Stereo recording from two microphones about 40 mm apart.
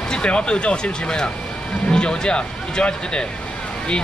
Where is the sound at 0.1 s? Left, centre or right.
Left.